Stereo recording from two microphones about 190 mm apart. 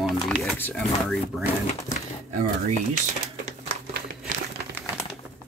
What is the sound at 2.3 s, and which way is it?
Speech, 45° right (ahead or behind).